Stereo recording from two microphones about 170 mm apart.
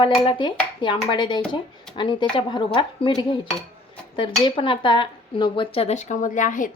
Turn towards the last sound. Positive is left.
turn(degrees=50)  # may be behind; listen again after turning